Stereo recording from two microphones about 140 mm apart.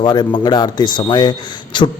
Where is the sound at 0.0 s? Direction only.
30° left (ahead or behind).